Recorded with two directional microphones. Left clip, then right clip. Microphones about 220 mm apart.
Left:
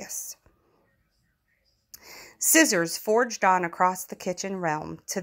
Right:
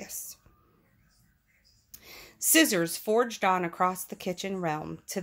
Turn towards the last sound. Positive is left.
turn(degrees=20)  # may be behind; listen again after turning